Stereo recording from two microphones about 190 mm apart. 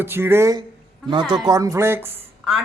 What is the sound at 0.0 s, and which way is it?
A woman's voice, 10° right (ahead or behind).